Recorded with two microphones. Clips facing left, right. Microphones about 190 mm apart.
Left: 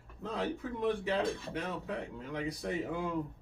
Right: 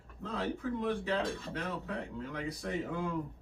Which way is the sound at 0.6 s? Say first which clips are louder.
Even; 20° left (ahead or behind).